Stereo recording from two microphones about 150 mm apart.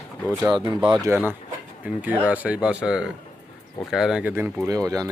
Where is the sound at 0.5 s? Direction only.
35° right (ahead or behind).